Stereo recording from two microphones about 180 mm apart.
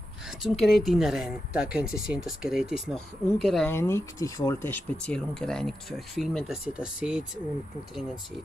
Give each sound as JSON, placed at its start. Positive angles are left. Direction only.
{"t": 0.5, "sound": "speech", "side_deg": 0}
{"t": 3.7, "sound": "speech", "side_deg": 15}